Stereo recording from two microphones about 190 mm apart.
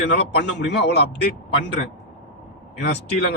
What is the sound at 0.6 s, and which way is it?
Speech, 60° left (ahead or behind).